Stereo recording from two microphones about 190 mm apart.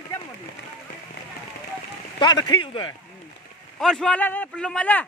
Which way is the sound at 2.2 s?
25° left (ahead or behind).